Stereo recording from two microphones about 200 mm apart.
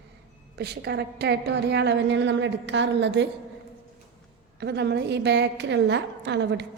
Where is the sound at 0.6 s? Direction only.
55° right (ahead or behind).